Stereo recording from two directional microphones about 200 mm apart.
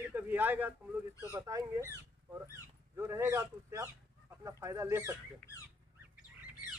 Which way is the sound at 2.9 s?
15° right (ahead or behind).